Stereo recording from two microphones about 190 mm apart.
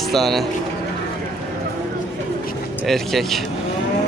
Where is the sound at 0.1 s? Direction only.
Centre (ahead or behind).